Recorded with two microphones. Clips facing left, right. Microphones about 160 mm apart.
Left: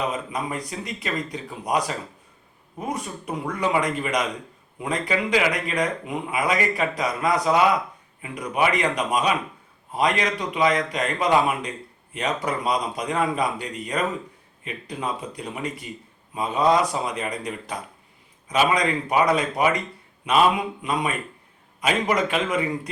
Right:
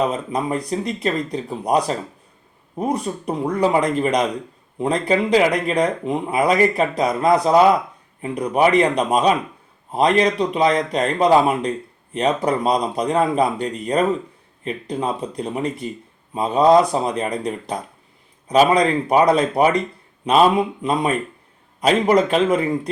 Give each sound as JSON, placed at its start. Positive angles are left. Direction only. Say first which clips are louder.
{"t": 0.3, "sound": "speech", "louder": "right 7 dB", "side_deg": -35}
{"t": 21.8, "sound": "speech", "louder": "right 7 dB", "side_deg": -35}